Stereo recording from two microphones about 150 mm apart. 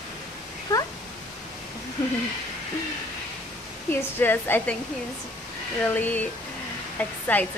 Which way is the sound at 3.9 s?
15° left (ahead or behind).